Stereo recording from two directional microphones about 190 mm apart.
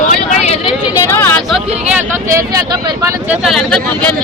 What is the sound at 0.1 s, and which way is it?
Vehicle, 35° left (ahead or behind).